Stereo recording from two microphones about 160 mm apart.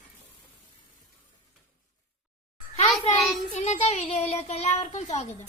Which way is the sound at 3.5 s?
45° left (ahead or behind).